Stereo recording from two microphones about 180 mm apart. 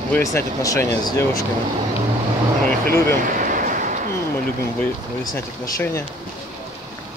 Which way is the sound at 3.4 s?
45° right (ahead or behind).